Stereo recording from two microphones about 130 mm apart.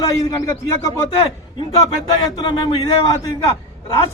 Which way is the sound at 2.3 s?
35° left (ahead or behind).